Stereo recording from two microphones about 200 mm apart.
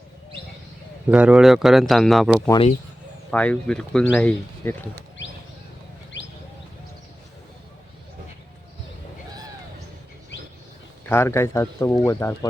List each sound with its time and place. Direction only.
1.1 s speech: 5° right (ahead or behind)
11.1 s speech: 10° left (ahead or behind)